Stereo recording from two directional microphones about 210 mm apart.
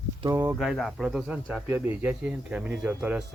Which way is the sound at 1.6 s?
10° right (ahead or behind).